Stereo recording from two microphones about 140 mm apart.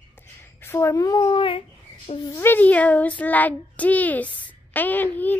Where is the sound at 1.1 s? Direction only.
35° left (ahead or behind).